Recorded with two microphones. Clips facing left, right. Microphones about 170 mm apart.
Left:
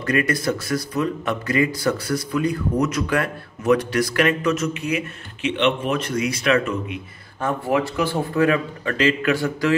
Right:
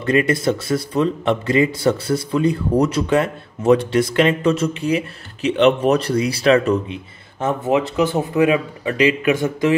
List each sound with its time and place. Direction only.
0.0 s speech: 25° right (ahead or behind)
7.3 s speech: 20° right (ahead or behind)